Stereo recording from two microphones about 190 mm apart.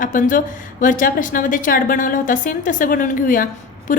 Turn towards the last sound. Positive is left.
turn(degrees=45)  # may be behind; listen again after turning